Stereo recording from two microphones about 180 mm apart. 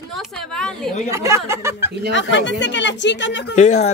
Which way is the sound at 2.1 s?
90° left.